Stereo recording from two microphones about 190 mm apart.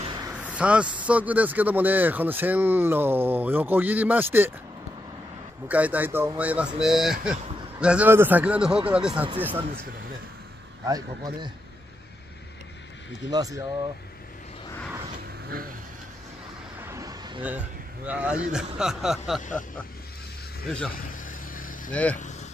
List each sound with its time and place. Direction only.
0.0 s a sound: 25° right (ahead or behind)
0.3 s speech: 5° right (ahead or behind)
5.7 s speech: 10° right (ahead or behind)
10.9 s a man's voice: 20° right (ahead or behind)
13.3 s a man's voice: 20° right (ahead or behind)
16.8 s a sound: 15° right (ahead or behind)
17.4 s speech: 10° right (ahead or behind)
20.6 s speech: 5° left (ahead or behind)
21.1 s vehicle: 45° left (ahead or behind)
22.1 s cattle: 40° left (ahead or behind)